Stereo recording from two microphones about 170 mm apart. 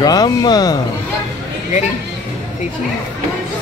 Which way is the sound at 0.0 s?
25° left (ahead or behind).